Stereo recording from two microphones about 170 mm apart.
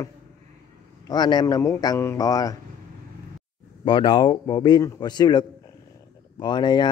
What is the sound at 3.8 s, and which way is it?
Speech, 30° left (ahead or behind).